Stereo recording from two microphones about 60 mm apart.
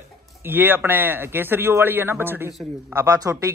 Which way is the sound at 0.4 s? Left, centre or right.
Right.